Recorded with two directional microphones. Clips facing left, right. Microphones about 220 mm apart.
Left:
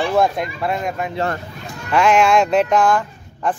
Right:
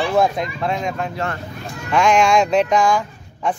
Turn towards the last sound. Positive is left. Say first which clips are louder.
# even
turn(degrees=0)  # may be behind; listen again after turning